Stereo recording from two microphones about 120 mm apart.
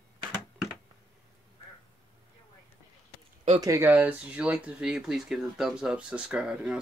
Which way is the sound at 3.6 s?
20° right (ahead or behind).